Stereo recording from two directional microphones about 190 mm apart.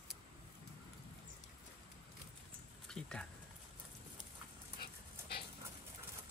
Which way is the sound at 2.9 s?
5° left (ahead or behind).